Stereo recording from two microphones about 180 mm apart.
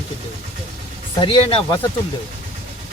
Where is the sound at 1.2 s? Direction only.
30° left (ahead or behind).